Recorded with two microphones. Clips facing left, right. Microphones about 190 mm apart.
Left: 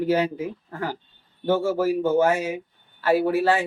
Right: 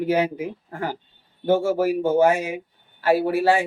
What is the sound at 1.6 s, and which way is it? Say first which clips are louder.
Speech: right 1 dB; 15° right (ahead or behind).